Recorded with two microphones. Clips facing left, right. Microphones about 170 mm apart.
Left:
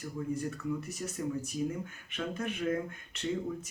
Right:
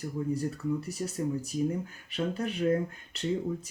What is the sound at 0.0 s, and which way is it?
Speech, 35° right (ahead or behind).